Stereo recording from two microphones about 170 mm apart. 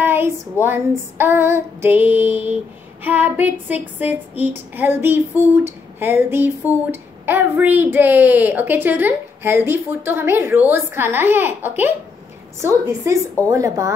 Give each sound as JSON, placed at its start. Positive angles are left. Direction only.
{"t": 0.0, "sound": "a woman's voice", "side_deg": -15}